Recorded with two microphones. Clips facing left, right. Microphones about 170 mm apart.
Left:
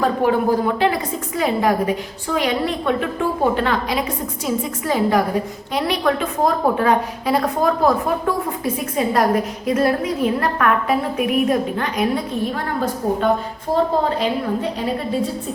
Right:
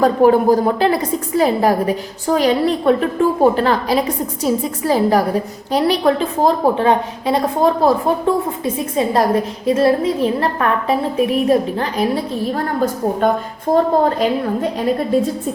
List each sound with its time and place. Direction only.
0.0 s a woman's voice: 40° right (ahead or behind)